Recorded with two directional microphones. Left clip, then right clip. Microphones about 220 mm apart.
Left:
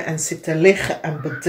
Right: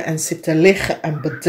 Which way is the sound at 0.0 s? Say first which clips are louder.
Right 3 dB; 45° right (ahead or behind).